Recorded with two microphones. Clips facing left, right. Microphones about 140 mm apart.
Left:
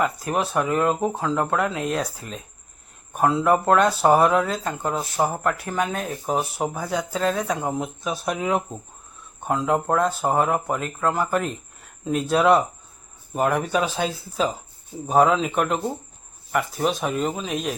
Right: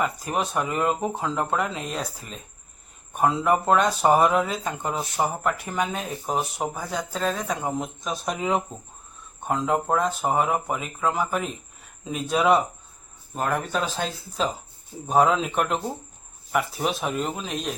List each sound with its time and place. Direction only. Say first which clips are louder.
0.0 s speech: left 2 dB; centre (ahead or behind)
3.1 s speech: left 2 dB; centre (ahead or behind)
8.7 s speech: left 4 dB; 45° left (ahead or behind)
9.4 s speech: left 2 dB; centre (ahead or behind)
13.3 s speech: left 4 dB; 10° left (ahead or behind)